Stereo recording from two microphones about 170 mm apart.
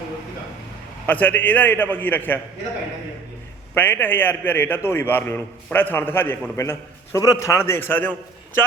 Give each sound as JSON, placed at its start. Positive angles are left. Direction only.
{"t": 1.0, "sound": "a man's voice", "side_deg": 10}
{"t": 3.8, "sound": "a man's voice", "side_deg": 10}